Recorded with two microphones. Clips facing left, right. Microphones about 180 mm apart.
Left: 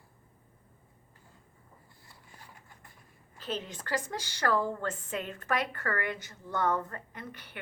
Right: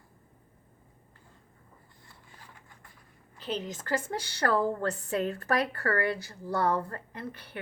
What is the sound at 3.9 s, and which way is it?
A woman's voice, 30° right (ahead or behind).